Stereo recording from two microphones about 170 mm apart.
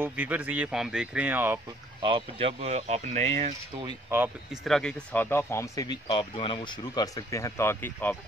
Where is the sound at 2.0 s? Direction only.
30° right (ahead or behind).